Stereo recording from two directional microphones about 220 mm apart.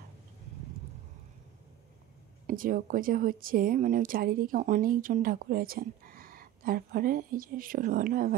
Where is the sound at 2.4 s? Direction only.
40° right (ahead or behind).